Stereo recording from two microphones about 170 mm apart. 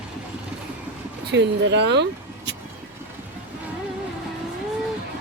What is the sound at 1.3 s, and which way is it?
Speech, 90° right.